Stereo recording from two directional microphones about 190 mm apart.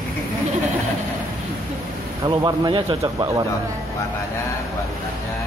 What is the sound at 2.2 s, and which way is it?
A man's voice, 20° right (ahead or behind).